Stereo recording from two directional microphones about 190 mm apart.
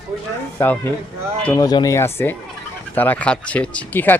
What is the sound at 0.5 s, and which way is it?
Speech, 10° left (ahead or behind).